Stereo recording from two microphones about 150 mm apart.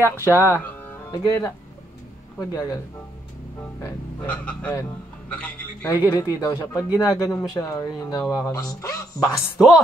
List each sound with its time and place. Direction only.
0.0 s speech: 15° right (ahead or behind)
0.3 s a man's voice: 15° left (ahead or behind)
4.3 s a man's voice: 10° left (ahead or behind)
6.0 s speech: 25° left (ahead or behind)